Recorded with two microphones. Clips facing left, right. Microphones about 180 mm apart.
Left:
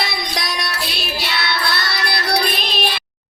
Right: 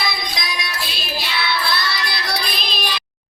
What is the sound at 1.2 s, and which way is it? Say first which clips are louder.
Music: even; 65° left (ahead or behind).